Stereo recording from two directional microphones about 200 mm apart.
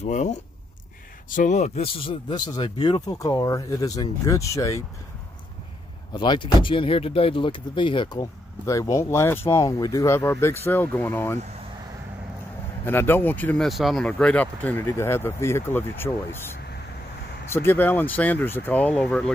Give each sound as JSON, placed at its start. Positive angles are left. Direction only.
{"t": 0.0, "sound": "speech", "side_deg": 35}
{"t": 6.1, "sound": "speech", "side_deg": 25}
{"t": 12.8, "sound": "speech", "side_deg": 10}
{"t": 17.5, "sound": "speech", "side_deg": 10}